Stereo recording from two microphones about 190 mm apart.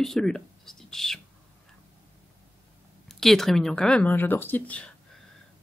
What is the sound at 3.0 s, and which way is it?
Speech, centre (ahead or behind).